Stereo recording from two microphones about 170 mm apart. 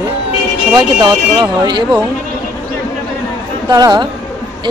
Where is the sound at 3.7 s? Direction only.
25° right (ahead or behind).